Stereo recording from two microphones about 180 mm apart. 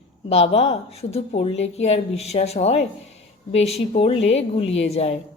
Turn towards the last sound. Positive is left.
turn(degrees=35)  # may be behind; listen again after turning